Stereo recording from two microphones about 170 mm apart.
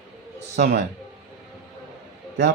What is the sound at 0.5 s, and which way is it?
Speech, 75° right (ahead or behind).